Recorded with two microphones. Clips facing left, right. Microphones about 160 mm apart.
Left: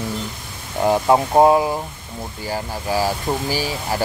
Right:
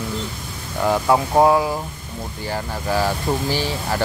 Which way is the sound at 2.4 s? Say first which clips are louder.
Even; 10° left (ahead or behind).